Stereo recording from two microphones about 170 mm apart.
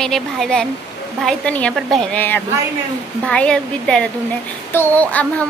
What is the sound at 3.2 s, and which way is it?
A woman's voice, 5° left (ahead or behind).